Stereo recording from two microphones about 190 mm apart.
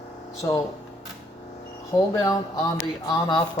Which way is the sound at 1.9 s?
20° left (ahead or behind).